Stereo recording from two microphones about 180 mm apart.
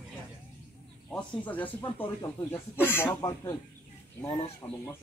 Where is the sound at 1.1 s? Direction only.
5° left (ahead or behind).